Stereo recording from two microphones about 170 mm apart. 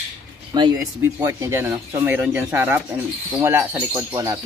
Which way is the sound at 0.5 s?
25° right (ahead or behind).